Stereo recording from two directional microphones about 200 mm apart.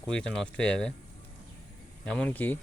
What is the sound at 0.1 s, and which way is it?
Speech, 5° left (ahead or behind).